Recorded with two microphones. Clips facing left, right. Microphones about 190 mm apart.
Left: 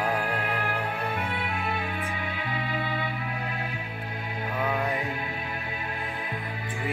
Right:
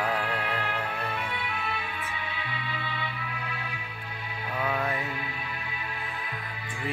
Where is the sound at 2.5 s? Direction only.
45° left (ahead or behind).